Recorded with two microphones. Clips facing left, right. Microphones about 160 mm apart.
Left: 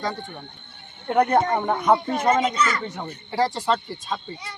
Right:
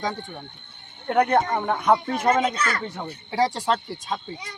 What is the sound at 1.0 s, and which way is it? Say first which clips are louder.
Speech: left 1 dB; 10° left (ahead or behind).